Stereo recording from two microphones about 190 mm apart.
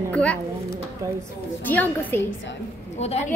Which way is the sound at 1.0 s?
15° right (ahead or behind).